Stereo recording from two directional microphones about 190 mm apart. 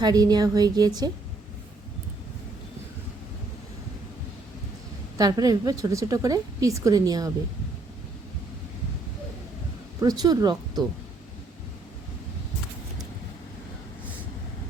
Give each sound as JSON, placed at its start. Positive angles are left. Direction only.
{"t": 0.0, "sound": "a woman's voice", "side_deg": -20}
{"t": 5.1, "sound": "a woman's voice", "side_deg": -20}
{"t": 10.0, "sound": "a woman's voice", "side_deg": -20}